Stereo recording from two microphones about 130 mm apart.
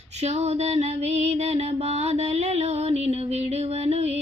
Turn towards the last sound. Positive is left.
turn(degrees=-55)  # may be behind; listen again after turning